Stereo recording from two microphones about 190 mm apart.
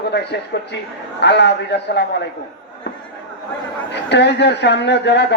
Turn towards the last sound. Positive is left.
turn(degrees=65)  # may be behind; listen again after turning